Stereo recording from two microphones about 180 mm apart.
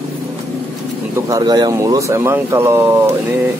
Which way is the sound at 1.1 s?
20° right (ahead or behind).